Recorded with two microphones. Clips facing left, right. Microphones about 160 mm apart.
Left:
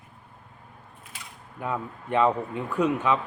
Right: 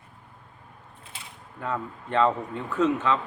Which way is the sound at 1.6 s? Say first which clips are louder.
Even; 15° left (ahead or behind).